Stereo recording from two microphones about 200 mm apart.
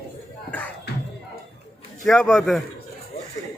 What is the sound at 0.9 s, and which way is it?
Music, 55° left (ahead or behind).